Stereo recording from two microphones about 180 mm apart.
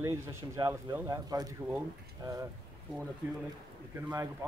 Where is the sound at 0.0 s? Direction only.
15° right (ahead or behind).